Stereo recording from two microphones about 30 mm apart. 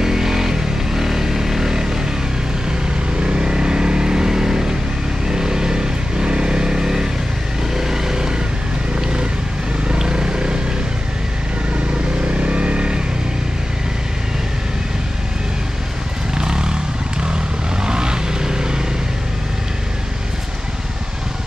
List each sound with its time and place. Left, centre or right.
0.0 s vehicle: centre
3.2 s vehicle: right
9.9 s vehicle: right
12.4 s vehicle: right
16.3 s vehicle: right
17.8 s vehicle: right